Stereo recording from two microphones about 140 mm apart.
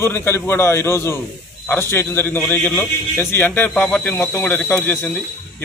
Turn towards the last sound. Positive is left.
turn(degrees=15)  # may be behind; listen again after turning